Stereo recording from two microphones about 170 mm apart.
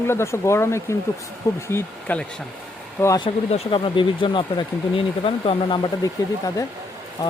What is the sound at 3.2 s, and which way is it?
Speech, 30° left (ahead or behind).